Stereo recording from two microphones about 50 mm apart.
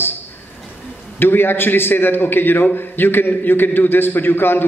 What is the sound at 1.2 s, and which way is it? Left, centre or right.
A man's voice, left.